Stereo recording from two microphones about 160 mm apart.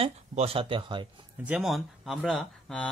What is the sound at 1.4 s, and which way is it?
Speech, centre (ahead or behind).